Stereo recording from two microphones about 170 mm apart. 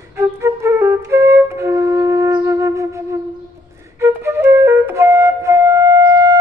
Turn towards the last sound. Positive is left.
turn(degrees=-20)  # may be behind; listen again after turning